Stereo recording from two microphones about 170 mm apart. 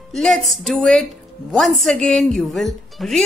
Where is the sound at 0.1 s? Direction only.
Centre (ahead or behind).